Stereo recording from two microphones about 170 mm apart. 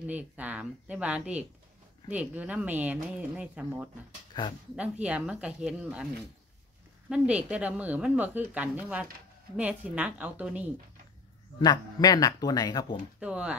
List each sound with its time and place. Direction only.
0.0 s speech: 10° right (ahead or behind)
4.3 s speech: 25° left (ahead or behind)
4.7 s speech: 10° right (ahead or behind)
7.1 s speech: 5° right (ahead or behind)
11.6 s speech: 25° left (ahead or behind)
13.2 s speech: 5° right (ahead or behind)